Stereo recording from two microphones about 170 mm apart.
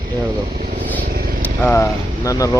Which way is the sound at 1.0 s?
60° right (ahead or behind).